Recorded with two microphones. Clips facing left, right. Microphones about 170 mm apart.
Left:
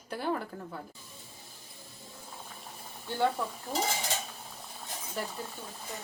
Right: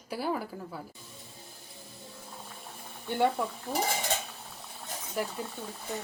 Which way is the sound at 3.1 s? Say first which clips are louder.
Right 2 dB; 20° right (ahead or behind).